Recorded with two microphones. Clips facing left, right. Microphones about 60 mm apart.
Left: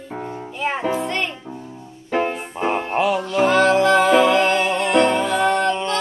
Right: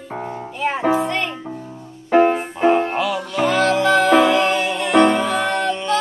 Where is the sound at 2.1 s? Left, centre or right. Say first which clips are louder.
Right 7 dB; right.